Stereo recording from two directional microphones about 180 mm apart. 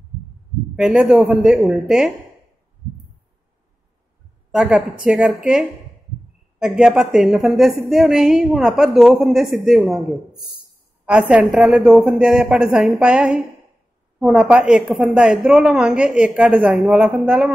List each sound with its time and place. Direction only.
0.7 s a woman's voice: 5° right (ahead or behind)
4.5 s a woman's voice: 5° right (ahead or behind)
11.1 s a woman's voice: 5° right (ahead or behind)